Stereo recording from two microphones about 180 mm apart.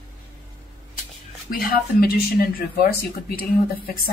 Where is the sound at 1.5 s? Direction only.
55° left (ahead or behind).